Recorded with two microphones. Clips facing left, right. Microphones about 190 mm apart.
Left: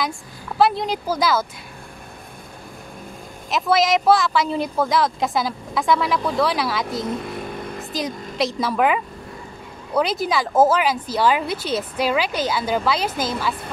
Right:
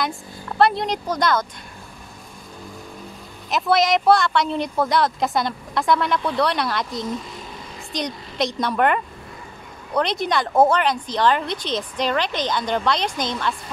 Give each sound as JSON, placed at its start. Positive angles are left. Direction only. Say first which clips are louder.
{"t": 0.6, "sound": "speech", "louder": "even", "side_deg": 0}
{"t": 3.4, "sound": "speech", "louder": "even", "side_deg": 0}
{"t": 7.2, "sound": "vehicle", "louder": "left 6 dB", "side_deg": 60}
{"t": 7.9, "sound": "speech", "louder": "right 1 dB", "side_deg": 5}